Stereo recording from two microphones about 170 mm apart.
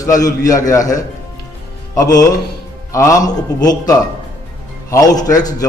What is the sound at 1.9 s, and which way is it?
A man's voice, 20° left (ahead or behind).